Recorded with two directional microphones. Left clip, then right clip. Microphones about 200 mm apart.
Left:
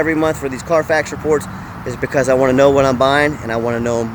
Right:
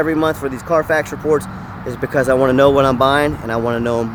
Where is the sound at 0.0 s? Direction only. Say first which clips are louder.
Left 1 dB; centre (ahead or behind).